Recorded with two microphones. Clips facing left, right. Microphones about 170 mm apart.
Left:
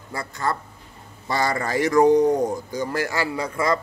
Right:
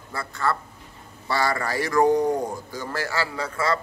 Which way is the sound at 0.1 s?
15° left (ahead or behind).